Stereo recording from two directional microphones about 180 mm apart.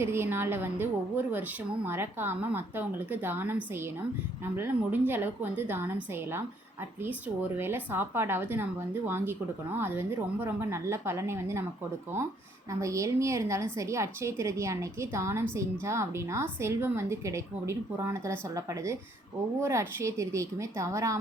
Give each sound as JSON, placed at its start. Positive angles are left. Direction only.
{"t": 0.0, "sound": "a woman's voice", "side_deg": -15}
{"t": 7.5, "sound": "a woman's voice", "side_deg": -10}
{"t": 12.8, "sound": "a woman's voice", "side_deg": -15}